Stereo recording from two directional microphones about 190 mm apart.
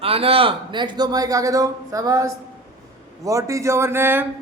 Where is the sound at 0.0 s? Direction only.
30° right (ahead or behind); by 4.3 s 10° right (ahead or behind).